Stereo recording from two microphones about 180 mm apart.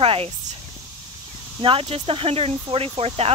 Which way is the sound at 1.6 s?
30° right (ahead or behind).